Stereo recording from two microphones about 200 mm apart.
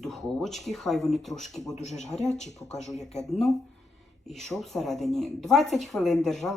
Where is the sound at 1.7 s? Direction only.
35° left (ahead or behind).